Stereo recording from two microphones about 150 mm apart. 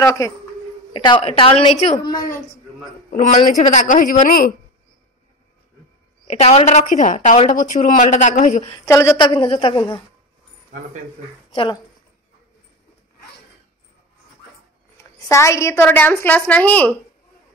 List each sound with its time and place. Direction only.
0.0 s a woman's voice: 20° left (ahead or behind)
0.9 s a woman's voice: 35° left (ahead or behind)
3.1 s speech: 60° left (ahead or behind)
6.2 s a woman's voice: 45° left (ahead or behind)
8.8 s a woman's voice: 20° left (ahead or behind)
9.2 s a woman's voice: 35° left (ahead or behind)
10.7 s speech: 65° right (ahead or behind)
11.5 s a woman's voice: 35° left (ahead or behind)
15.1 s a woman's voice: 20° left (ahead or behind)